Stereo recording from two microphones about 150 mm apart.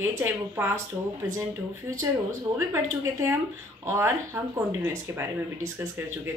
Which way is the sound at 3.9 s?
20° right (ahead or behind).